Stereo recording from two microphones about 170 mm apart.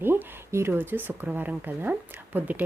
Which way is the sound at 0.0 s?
15° right (ahead or behind).